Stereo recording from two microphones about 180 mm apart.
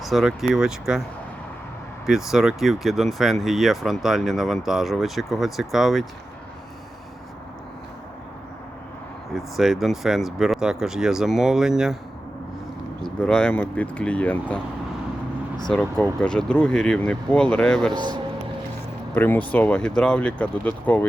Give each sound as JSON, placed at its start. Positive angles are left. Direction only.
{"t": 0.0, "sound": "speech", "side_deg": 0}
{"t": 2.0, "sound": "speech", "side_deg": 0}
{"t": 9.3, "sound": "speech", "side_deg": 0}
{"t": 13.0, "sound": "speech", "side_deg": 5}
{"t": 15.7, "sound": "speech", "side_deg": 5}
{"t": 17.9, "sound": "a man's voice", "side_deg": -25}
{"t": 19.1, "sound": "speech", "side_deg": 10}